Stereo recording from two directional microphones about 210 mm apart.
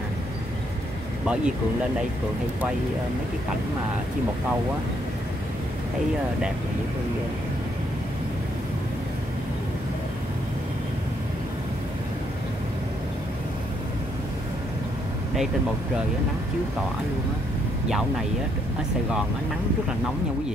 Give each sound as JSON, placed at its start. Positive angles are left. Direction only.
{"t": 1.2, "sound": "speech", "side_deg": -5}